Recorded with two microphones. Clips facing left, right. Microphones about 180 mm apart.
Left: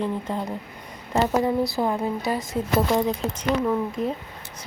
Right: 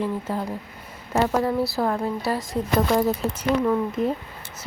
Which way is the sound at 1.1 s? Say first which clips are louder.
Even; 15° left (ahead or behind).